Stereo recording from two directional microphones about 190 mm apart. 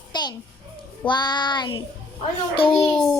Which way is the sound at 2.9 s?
Centre (ahead or behind).